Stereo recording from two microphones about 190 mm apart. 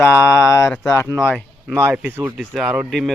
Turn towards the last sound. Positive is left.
turn(degrees=0)  # may be behind; listen again after turning